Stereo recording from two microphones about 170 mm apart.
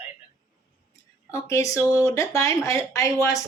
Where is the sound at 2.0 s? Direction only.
20° left (ahead or behind).